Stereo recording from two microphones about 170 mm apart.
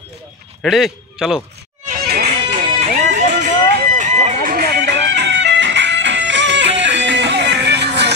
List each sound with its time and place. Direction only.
0.6 s a man's voice: centre (ahead or behind)
1.9 s music: 65° right (ahead or behind)
2.2 s music: 45° right (ahead or behind)
3.9 s a sound: 45° right (ahead or behind)
4.6 s music: 80° right